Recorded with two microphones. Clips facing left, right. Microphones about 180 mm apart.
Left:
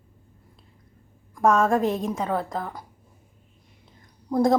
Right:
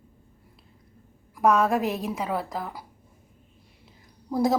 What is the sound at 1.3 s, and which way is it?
A woman's voice, 5° right (ahead or behind).